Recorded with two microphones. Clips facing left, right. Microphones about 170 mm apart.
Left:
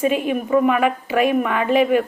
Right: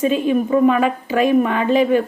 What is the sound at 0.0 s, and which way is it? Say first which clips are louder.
A woman's voice: right 3 dB; 30° right (ahead or behind).